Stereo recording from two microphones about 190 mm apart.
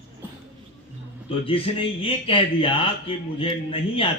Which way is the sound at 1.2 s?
30° left (ahead or behind).